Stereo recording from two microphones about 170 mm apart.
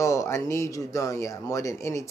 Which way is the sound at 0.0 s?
20° left (ahead or behind).